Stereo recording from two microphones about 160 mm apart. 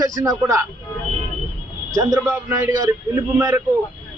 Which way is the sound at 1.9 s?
20° right (ahead or behind).